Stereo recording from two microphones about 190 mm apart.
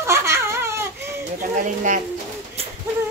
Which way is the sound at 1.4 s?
45° right (ahead or behind).